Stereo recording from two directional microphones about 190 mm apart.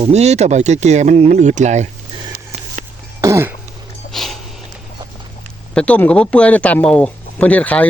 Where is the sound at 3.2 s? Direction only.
15° right (ahead or behind).